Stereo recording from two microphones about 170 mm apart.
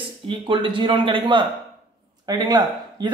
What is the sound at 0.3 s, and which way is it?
Speech, 30° right (ahead or behind).